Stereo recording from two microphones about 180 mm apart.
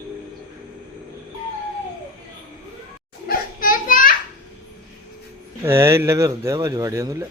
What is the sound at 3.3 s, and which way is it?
Children playing, 50° left (ahead or behind).